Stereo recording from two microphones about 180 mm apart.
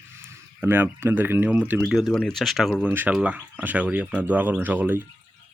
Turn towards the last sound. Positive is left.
turn(degrees=-10)  # may be behind; listen again after turning